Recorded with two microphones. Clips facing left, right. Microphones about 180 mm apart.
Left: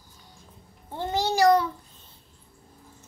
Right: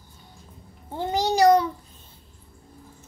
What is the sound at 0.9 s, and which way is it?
Speech, 15° right (ahead or behind).